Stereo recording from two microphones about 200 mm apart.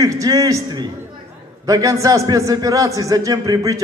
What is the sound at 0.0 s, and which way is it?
A man's voice, 15° right (ahead or behind).